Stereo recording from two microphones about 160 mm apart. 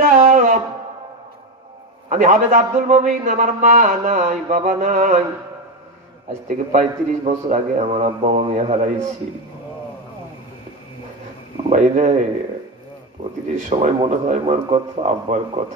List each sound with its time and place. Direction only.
0.1 s a sound: 55° right (ahead or behind)
2.0 s a man's voice: 50° right (ahead or behind)
6.4 s a man's voice: 50° right (ahead or behind)
11.7 s a man's voice: 50° right (ahead or behind)
13.2 s a man's voice: 55° right (ahead or behind)